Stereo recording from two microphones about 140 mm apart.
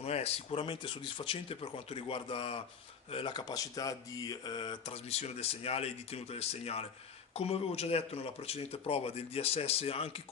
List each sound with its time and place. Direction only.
0.0 s speech: 45° left (ahead or behind)
5.1 s speech: 45° left (ahead or behind)